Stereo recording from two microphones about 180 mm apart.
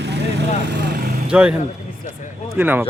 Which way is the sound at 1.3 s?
5° right (ahead or behind).